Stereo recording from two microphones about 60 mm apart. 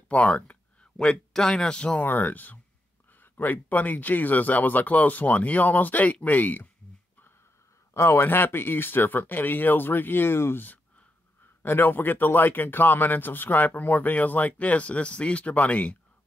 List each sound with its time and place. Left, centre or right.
0.1 s speech: left
0.9 s speech: centre
2.0 s speech: left
7.9 s speech: left